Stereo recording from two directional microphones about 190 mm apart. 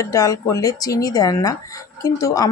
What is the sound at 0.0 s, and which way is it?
Speech, 15° left (ahead or behind).